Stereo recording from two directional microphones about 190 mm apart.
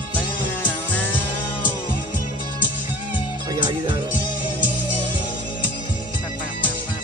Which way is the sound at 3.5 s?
25° right (ahead or behind).